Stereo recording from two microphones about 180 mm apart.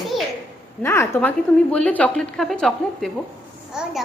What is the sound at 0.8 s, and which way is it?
A woman's voice, 15° left (ahead or behind).